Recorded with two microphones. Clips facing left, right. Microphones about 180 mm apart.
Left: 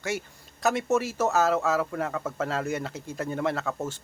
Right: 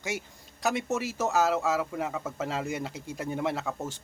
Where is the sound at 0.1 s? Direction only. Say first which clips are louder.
Left 3 dB; 15° right (ahead or behind).